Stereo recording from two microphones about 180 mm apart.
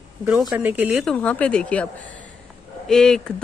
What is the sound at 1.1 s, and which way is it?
Speech, 5° left (ahead or behind).